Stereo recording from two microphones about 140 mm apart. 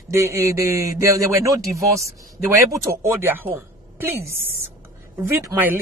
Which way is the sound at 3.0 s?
15° right (ahead or behind).